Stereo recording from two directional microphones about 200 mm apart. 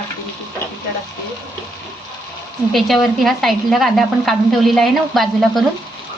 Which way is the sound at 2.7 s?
Centre (ahead or behind).